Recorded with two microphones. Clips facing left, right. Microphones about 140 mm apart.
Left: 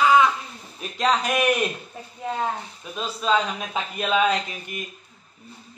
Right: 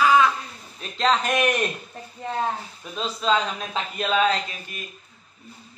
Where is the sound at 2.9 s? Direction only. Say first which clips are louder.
Right 1 dB; 5° left (ahead or behind).